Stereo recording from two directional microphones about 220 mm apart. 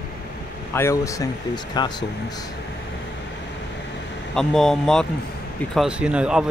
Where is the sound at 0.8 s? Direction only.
15° left (ahead or behind).